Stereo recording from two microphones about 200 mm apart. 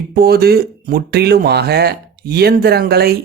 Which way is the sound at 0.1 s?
50° right (ahead or behind).